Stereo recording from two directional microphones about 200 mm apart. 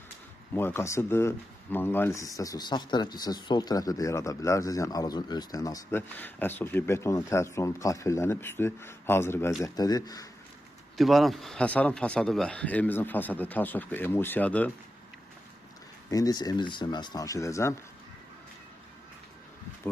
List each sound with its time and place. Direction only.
0.5 s speech: 10° left (ahead or behind)
10.9 s speech: centre (ahead or behind)
16.0 s speech: 20° left (ahead or behind)